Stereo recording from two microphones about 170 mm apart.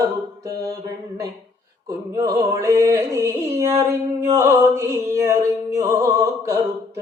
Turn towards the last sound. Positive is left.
turn(degrees=-15)  # may be behind; listen again after turning